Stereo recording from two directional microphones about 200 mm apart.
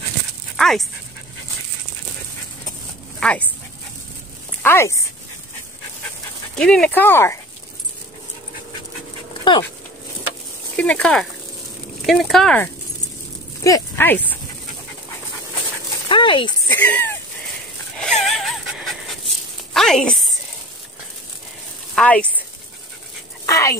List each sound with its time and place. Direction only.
0.6 s dog: centre (ahead or behind)
3.2 s speech: 5° left (ahead or behind)
4.6 s speech: 15° left (ahead or behind)
6.5 s speech: 5° left (ahead or behind)
9.4 s speech: 25° left (ahead or behind)
10.8 s speech: 5° left (ahead or behind)
16.1 s a sound: 25° left (ahead or behind)
16.6 s a sound: 10° left (ahead or behind)
17.9 s dog: centre (ahead or behind)
19.7 s a sound: centre (ahead or behind)
21.9 s speech: 5° left (ahead or behind)
23.4 s dog: 15° left (ahead or behind)